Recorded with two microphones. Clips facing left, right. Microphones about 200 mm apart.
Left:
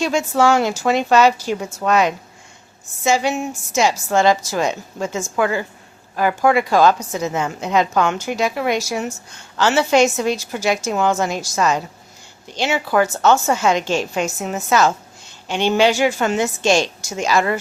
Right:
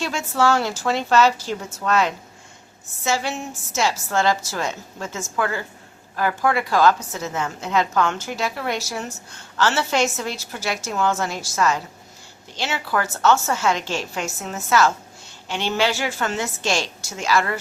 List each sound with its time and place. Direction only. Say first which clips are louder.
0.0 s a woman's voice: left 5 dB; 15° left (ahead or behind)